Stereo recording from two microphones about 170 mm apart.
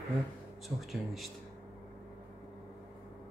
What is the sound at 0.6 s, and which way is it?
Speech, centre (ahead or behind).